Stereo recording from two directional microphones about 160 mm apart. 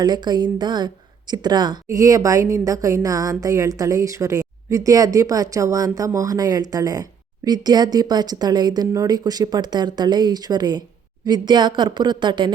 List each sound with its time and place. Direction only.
0.0 s a woman's voice: 25° right (ahead or behind)